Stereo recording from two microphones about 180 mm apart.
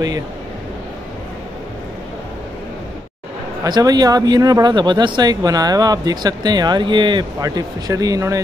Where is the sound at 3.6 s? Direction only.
20° right (ahead or behind).